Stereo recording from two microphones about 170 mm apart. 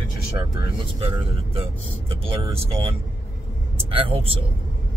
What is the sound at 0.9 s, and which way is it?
Speech, 35° right (ahead or behind).